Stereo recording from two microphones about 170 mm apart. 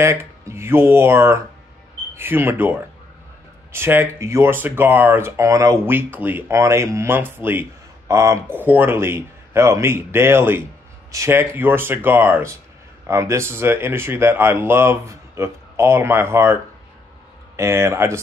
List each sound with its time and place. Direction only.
0.0 s speech: 15° right (ahead or behind)
17.6 s speech: 15° right (ahead or behind)